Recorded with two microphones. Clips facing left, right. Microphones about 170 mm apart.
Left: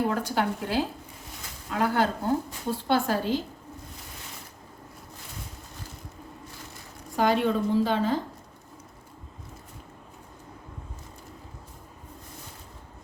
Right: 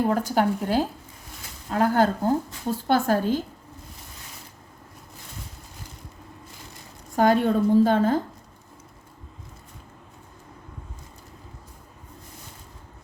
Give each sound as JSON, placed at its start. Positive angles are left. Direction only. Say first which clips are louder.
{"t": 0.1, "sound": "a woman's voice", "louder": "right 5 dB", "side_deg": -45}
{"t": 7.2, "sound": "a woman's voice", "louder": "right 4 dB", "side_deg": -45}